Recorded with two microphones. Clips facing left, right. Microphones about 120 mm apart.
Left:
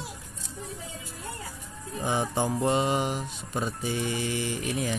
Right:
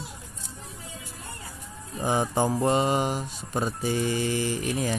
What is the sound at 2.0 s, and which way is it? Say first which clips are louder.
Speech: right 3 dB; 45° right (ahead or behind).